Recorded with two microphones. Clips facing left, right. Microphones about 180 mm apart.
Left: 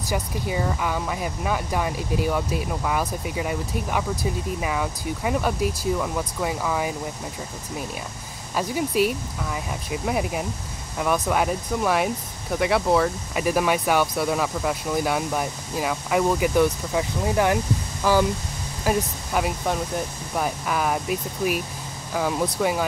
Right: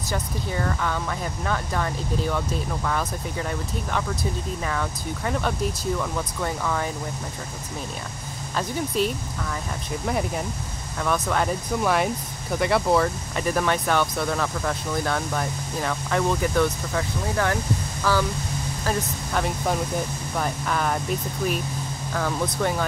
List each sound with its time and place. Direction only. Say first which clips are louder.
0.1 s speech: left 2 dB; 10° left (ahead or behind)
8.5 s speech: left 3 dB; 10° left (ahead or behind)